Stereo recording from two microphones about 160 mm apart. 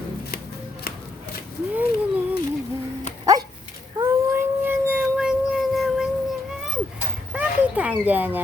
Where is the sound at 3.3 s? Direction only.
20° right (ahead or behind).